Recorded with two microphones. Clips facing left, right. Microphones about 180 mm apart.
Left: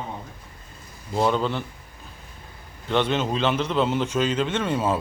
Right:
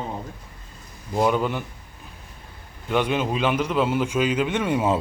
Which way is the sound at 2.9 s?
10° right (ahead or behind).